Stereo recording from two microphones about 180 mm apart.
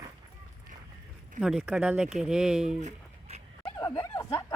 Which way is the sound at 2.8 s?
35° right (ahead or behind).